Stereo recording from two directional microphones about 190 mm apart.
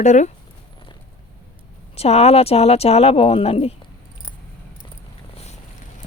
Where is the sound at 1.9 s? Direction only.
35° left (ahead or behind).